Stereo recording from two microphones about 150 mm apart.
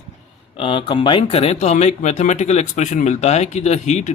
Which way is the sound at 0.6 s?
35° left (ahead or behind).